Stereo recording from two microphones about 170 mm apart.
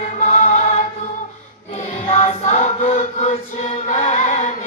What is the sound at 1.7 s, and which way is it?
Chant, 45° left (ahead or behind).